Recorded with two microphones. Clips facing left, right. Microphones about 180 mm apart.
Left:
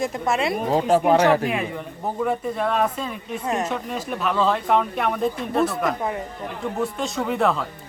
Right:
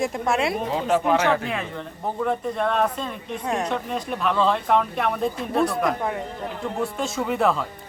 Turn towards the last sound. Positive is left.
turn(degrees=0)  # may be behind; listen again after turning